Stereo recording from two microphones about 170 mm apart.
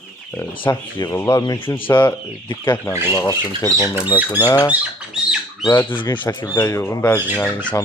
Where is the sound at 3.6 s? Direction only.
20° left (ahead or behind).